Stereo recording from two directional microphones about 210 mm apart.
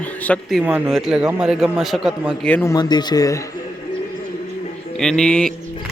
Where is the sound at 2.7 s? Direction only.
20° left (ahead or behind).